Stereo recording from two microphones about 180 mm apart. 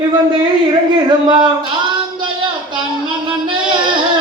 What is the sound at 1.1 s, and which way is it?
Speech, 25° right (ahead or behind).